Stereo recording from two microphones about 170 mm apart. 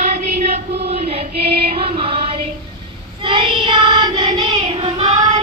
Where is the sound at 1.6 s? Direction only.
35° right (ahead or behind).